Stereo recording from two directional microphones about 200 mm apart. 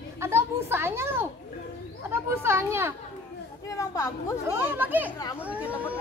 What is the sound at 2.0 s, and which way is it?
Children playing, 10° right (ahead or behind).